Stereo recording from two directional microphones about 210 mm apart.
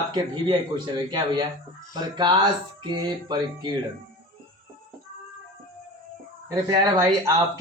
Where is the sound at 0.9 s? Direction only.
20° right (ahead or behind).